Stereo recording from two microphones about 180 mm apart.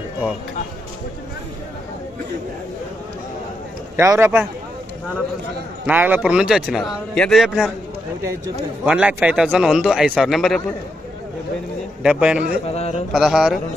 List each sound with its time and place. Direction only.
3.9 s a man's voice: 15° right (ahead or behind)
5.9 s a man's voice: 10° right (ahead or behind)
8.8 s a man's voice: 5° right (ahead or behind)
12.0 s a man's voice: 5° right (ahead or behind)
12.6 s speech: 35° left (ahead or behind)
13.1 s a man's voice: 5° right (ahead or behind)